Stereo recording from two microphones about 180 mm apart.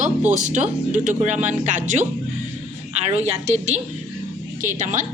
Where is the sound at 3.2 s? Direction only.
35° right (ahead or behind).